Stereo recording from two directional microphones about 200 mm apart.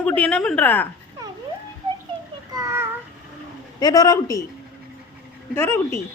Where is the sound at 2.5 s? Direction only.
15° right (ahead or behind).